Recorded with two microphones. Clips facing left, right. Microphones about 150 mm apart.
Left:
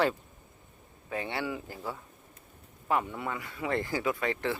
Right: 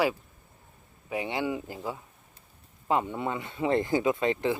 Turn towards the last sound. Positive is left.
turn(degrees=-20)  # may be behind; listen again after turning